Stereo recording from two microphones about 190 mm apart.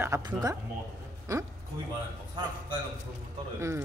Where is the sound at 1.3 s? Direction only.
15° right (ahead or behind).